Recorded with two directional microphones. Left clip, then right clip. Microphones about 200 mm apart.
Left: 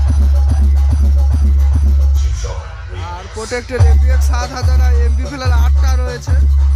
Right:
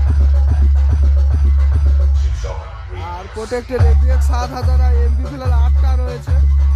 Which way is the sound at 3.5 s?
10° right (ahead or behind).